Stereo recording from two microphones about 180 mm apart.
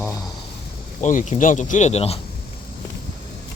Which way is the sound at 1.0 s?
40° left (ahead or behind).